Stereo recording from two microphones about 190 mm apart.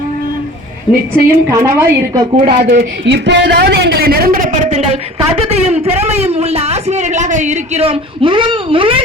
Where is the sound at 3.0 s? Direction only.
65° right (ahead or behind).